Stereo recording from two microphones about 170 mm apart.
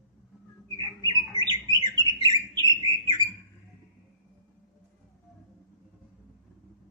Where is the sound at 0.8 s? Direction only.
25° right (ahead or behind).